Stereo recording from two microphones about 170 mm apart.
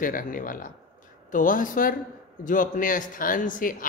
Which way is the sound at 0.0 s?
55° left (ahead or behind).